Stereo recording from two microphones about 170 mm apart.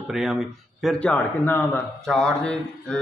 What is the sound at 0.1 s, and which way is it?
A man's voice, centre (ahead or behind).